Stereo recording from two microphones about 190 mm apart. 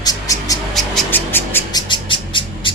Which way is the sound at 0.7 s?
Centre (ahead or behind).